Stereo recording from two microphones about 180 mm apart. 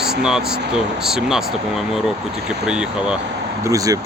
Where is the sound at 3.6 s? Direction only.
20° right (ahead or behind).